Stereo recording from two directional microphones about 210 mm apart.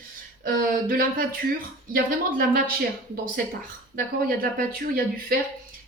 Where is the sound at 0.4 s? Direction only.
45° right (ahead or behind).